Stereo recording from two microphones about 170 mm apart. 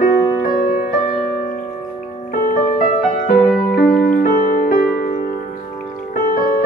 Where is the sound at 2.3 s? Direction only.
55° left (ahead or behind).